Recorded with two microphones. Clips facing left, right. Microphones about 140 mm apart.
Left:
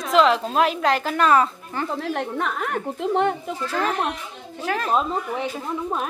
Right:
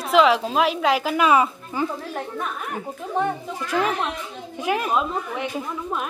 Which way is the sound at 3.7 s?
15° right (ahead or behind).